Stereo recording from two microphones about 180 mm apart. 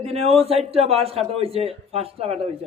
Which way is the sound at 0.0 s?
35° right (ahead or behind).